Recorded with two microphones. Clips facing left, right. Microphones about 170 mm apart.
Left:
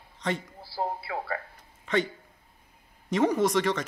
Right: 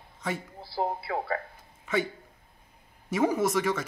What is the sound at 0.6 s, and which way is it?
Speech, 20° right (ahead or behind).